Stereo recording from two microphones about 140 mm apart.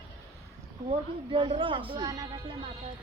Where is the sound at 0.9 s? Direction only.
40° right (ahead or behind).